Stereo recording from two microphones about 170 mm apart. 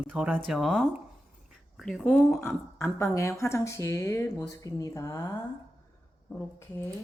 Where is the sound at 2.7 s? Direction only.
15° left (ahead or behind).